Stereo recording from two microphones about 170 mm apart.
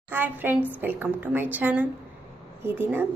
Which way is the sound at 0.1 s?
10° right (ahead or behind).